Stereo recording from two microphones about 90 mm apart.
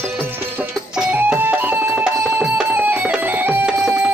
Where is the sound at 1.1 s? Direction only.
20° right (ahead or behind).